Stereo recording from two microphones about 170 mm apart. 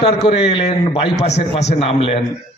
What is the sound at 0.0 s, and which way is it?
Speech, 40° left (ahead or behind).